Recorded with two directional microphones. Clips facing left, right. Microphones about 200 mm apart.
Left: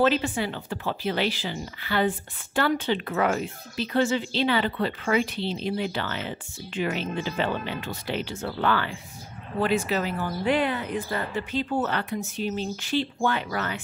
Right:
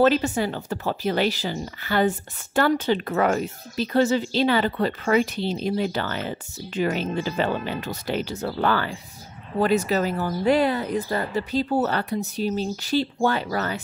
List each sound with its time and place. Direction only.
0.0 s speech: 40° right (ahead or behind)